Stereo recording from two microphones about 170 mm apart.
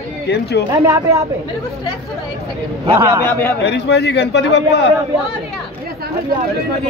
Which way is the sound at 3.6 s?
90° left.